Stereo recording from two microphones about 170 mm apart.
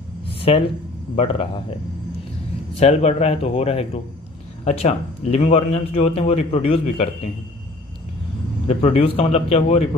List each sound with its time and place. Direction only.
0.3 s a sound: 35° left (ahead or behind)
1.1 s a man's voice: 30° left (ahead or behind)
2.8 s a man's voice: 40° left (ahead or behind)
8.6 s a man's voice: 35° left (ahead or behind)